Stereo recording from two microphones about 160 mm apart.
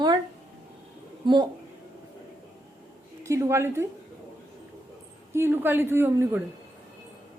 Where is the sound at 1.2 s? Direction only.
30° right (ahead or behind).